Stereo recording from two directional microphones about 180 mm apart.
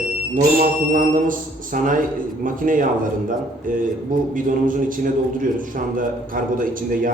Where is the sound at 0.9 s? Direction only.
45° right (ahead or behind).